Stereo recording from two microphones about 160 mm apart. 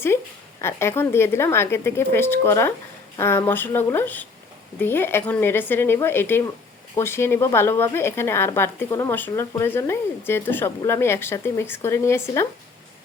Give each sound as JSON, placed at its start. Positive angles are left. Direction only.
{"t": 0.6, "sound": "speech", "side_deg": 15}